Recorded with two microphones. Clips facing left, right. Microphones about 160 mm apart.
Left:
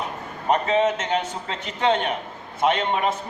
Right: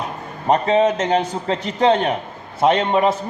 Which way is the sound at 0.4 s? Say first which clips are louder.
Right 4 dB; 35° right (ahead or behind).